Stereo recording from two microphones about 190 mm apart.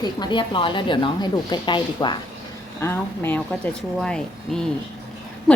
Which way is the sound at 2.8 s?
15° left (ahead or behind).